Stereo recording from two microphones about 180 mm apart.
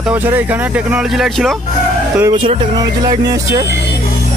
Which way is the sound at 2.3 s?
25° right (ahead or behind).